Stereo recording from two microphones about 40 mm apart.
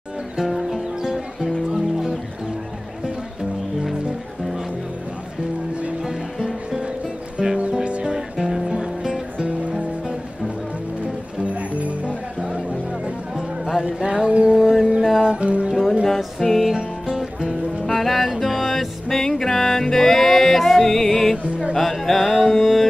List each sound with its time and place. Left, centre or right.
0.4 s music: centre
6.4 s music: centre
8.4 s music: centre; by 9.8 s right
11.3 s music: right
12.4 s music: right
12.9 s music: centre
13.8 s a sound: right
14.6 s a sound: centre
15.0 s music: centre
15.4 s music: right
16.1 s music: centre
16.7 s music: centre
17.8 s music: centre
21.7 s carnatic music: centre